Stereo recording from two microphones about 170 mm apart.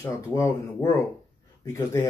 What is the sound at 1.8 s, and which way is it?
Speech, 15° left (ahead or behind).